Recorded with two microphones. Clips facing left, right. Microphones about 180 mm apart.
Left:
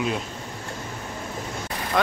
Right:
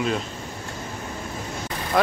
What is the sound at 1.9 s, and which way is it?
Speech, 5° right (ahead or behind).